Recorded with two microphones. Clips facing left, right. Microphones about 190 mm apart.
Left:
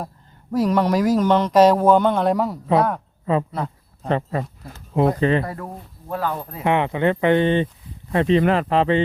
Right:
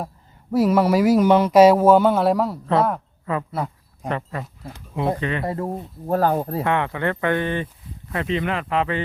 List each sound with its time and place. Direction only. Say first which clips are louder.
0.5 s speech: right 2 dB; 10° right (ahead or behind)
3.5 s a sound: even; 10° right (ahead or behind)
4.1 s speech: left 5 dB; 30° left (ahead or behind)
5.5 s speech: right 6 dB; 25° right (ahead or behind)
6.1 s speech: right 6 dB; 45° right (ahead or behind)
6.7 s speech: left 7 dB; 20° left (ahead or behind)